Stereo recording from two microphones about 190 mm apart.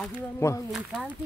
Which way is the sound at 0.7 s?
Centre (ahead or behind).